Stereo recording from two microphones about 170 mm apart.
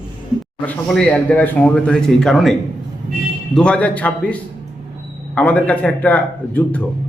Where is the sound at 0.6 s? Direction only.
5° left (ahead or behind).